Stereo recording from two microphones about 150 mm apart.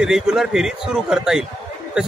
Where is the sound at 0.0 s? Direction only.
5° right (ahead or behind).